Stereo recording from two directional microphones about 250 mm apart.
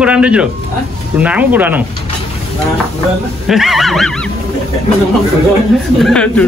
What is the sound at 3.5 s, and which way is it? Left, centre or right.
Speech, centre.